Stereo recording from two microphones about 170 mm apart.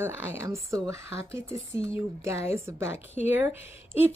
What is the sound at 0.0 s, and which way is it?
A woman's voice, 15° right (ahead or behind).